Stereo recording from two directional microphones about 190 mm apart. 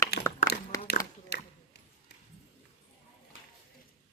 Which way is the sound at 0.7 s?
15° left (ahead or behind).